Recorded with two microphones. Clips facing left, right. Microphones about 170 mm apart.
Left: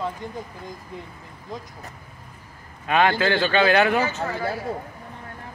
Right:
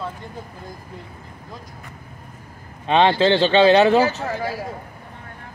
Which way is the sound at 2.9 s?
25° right (ahead or behind).